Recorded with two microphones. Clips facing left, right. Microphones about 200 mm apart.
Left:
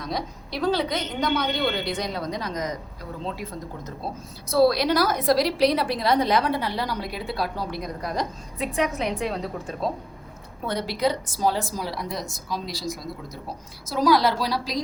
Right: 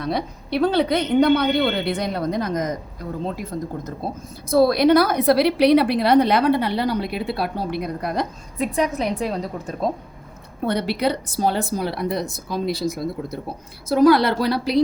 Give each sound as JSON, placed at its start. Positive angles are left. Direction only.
{"t": 0.0, "sound": "a woman's voice", "side_deg": -60}
{"t": 10.7, "sound": "a woman's voice", "side_deg": -65}